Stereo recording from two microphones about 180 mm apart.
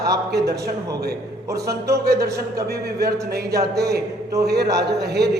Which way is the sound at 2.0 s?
60° right (ahead or behind).